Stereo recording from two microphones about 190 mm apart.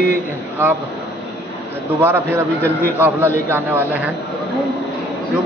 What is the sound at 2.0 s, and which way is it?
Speech, 10° right (ahead or behind).